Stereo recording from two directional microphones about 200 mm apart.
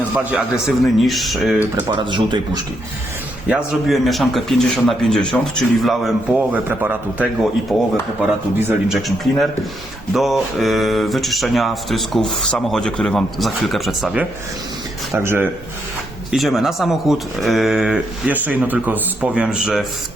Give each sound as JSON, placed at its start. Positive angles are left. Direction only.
{"t": 0.3, "sound": "speech", "side_deg": -5}
{"t": 1.9, "sound": "speech", "side_deg": -25}
{"t": 3.5, "sound": "speech", "side_deg": -5}
{"t": 7.7, "sound": "speech", "side_deg": 5}
{"t": 8.5, "sound": "speech", "side_deg": -10}
{"t": 9.0, "sound": "speech", "side_deg": 0}
{"t": 16.3, "sound": "speech", "side_deg": 0}